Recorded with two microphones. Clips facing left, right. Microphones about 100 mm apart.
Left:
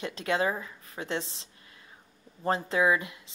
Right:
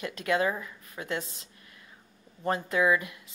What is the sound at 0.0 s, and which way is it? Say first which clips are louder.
Speech: right 1 dB; 25° left (ahead or behind).